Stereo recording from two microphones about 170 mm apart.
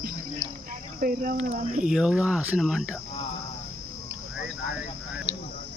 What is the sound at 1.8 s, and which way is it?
Speech, 5° right (ahead or behind).